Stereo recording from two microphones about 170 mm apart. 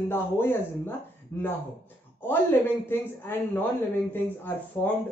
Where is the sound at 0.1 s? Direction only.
15° left (ahead or behind).